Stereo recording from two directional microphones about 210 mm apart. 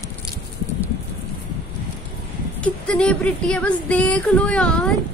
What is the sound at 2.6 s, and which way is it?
A woman's voice, 5° left (ahead or behind).